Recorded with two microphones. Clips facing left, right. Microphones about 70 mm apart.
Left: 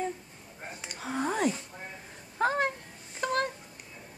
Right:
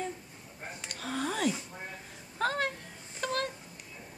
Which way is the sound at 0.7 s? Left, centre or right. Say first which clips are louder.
Left 2 dB; centre.